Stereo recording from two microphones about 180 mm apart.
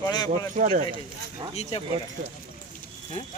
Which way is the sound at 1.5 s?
35° left (ahead or behind).